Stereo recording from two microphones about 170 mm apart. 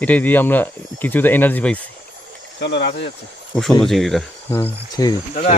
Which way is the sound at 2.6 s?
90° left.